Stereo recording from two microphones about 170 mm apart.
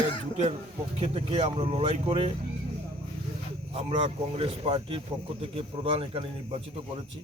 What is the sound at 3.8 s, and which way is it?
Speech, 35° right (ahead or behind).